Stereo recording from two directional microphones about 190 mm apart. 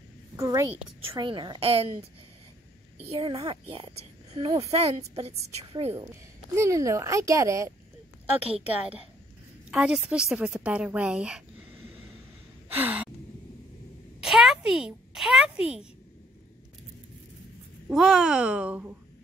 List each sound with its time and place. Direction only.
0.4 s speech: 15° right (ahead or behind)
4.7 s a woman's voice: 35° right (ahead or behind)
6.5 s speech: 15° right (ahead or behind)
8.5 s speech: 30° right (ahead or behind)
9.7 s a child's voice: 5° right (ahead or behind)
12.7 s speech: 10° right (ahead or behind)
14.2 s a child's voice: centre (ahead or behind)
17.8 s a child's voice: 5° right (ahead or behind)